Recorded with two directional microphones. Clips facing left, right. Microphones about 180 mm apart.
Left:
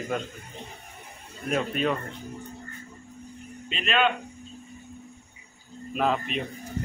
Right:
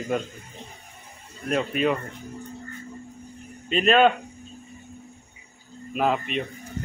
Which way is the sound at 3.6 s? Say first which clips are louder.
Right 7 dB; 45° right (ahead or behind).